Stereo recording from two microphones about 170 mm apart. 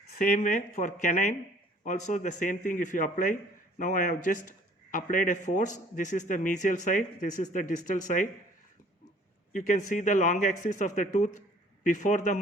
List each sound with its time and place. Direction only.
0.2 s a man's voice: 50° left (ahead or behind)
9.5 s a man's voice: 45° left (ahead or behind)